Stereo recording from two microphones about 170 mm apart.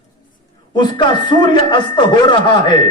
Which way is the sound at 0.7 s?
25° left (ahead or behind).